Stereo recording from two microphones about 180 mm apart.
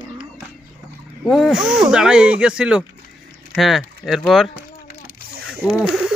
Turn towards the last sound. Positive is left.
turn(degrees=-5)  # may be behind; listen again after turning